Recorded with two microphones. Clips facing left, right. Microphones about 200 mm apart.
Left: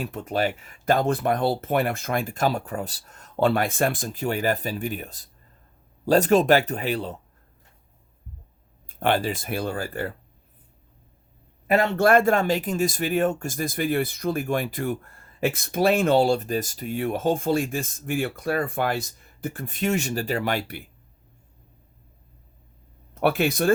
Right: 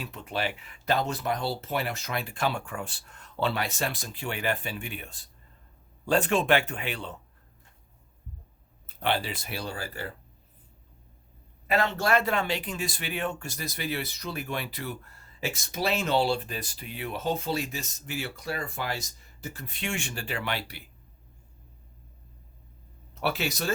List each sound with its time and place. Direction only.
0.0 s speech: 45° left (ahead or behind)
9.0 s speech: 50° left (ahead or behind)
11.9 s speech: 50° left (ahead or behind)
23.2 s speech: 55° left (ahead or behind)